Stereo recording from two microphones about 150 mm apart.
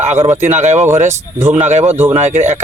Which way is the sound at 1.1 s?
20° right (ahead or behind).